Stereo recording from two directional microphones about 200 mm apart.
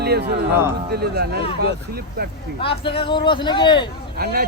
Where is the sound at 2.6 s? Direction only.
25° left (ahead or behind).